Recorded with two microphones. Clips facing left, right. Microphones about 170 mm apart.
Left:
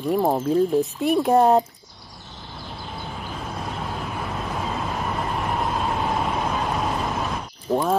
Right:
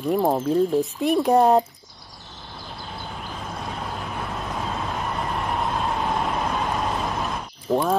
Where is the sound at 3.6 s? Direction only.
Centre (ahead or behind).